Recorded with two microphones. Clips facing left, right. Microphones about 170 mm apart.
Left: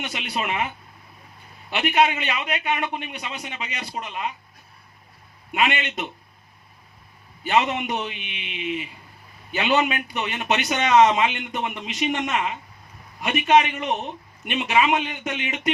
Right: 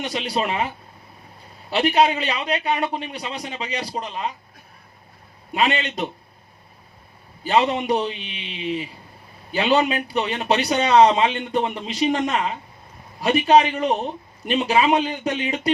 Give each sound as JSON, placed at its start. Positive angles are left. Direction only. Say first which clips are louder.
{"t": 0.0, "sound": "speech", "louder": "right 5 dB", "side_deg": -35}
{"t": 1.7, "sound": "speech", "louder": "right 3 dB", "side_deg": -35}
{"t": 5.5, "sound": "speech", "louder": "right 2 dB", "side_deg": -35}
{"t": 7.4, "sound": "speech", "louder": "right 3 dB", "side_deg": -35}